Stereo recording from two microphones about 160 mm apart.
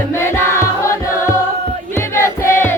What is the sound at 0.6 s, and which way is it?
Music, 20° left (ahead or behind).